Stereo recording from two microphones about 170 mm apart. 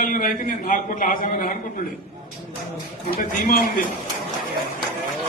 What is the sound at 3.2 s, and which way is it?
Speech, 55° left (ahead or behind).